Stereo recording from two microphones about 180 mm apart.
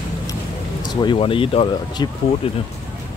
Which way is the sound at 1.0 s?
30° left (ahead or behind).